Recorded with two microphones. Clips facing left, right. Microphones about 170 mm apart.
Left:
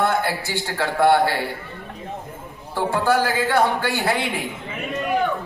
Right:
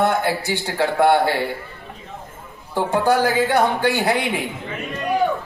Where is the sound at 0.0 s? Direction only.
15° right (ahead or behind).